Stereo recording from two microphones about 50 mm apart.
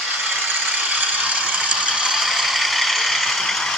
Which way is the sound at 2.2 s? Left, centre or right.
Centre.